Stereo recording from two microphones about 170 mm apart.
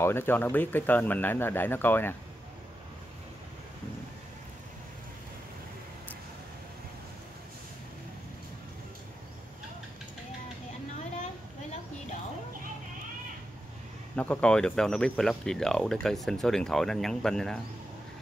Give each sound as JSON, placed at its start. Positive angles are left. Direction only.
{"t": 0.0, "sound": "speech", "side_deg": 15}
{"t": 14.1, "sound": "speech", "side_deg": 10}